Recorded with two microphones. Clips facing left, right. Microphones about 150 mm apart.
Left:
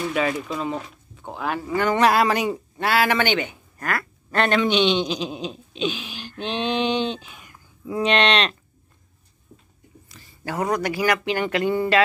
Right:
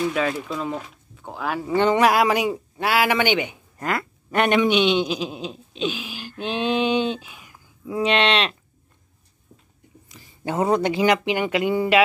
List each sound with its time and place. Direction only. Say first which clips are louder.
0.1 s speech: even; 5° left (ahead or behind)
1.7 s speech: right 4 dB; 25° right (ahead or behind)
2.0 s speech: right 1 dB; 10° right (ahead or behind)
10.0 s speech: right 4 dB; 15° right (ahead or behind)